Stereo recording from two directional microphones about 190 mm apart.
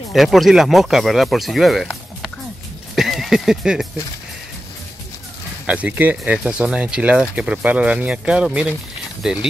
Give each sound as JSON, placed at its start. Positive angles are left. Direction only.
{"t": 0.1, "sound": "speech", "side_deg": 0}
{"t": 3.0, "sound": "a sound", "side_deg": 0}
{"t": 5.7, "sound": "speech", "side_deg": -5}